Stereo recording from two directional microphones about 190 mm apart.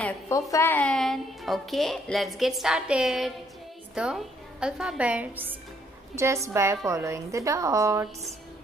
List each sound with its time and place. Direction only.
0.5 s a woman's voice: 15° left (ahead or behind); by 8.1 s 15° right (ahead or behind)